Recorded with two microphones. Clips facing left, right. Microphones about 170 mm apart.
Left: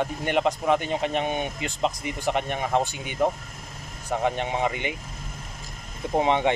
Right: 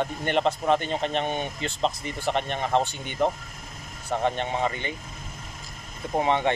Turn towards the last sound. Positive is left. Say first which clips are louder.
# left 2 dB
turn(degrees=15)  # may be behind; listen again after turning